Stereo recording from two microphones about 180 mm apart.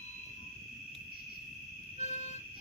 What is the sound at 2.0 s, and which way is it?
Vehicle, 40° left (ahead or behind).